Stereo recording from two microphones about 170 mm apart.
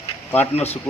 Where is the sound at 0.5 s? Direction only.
40° left (ahead or behind).